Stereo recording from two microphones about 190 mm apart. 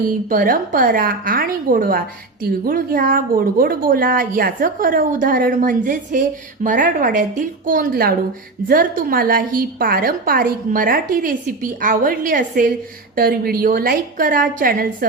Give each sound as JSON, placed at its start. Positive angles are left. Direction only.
{"t": 0.0, "sound": "a woman's voice", "side_deg": -45}